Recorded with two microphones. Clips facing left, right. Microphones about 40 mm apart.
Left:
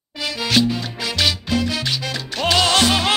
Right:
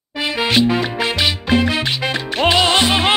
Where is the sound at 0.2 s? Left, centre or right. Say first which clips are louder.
Right 3 dB; right.